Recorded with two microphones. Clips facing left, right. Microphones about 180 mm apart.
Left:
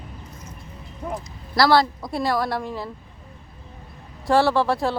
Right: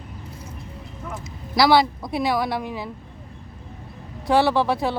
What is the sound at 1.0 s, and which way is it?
Speech, 30° left (ahead or behind).